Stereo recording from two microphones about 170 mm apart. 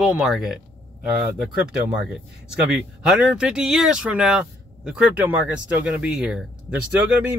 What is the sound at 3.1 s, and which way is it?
Speech, 5° right (ahead or behind).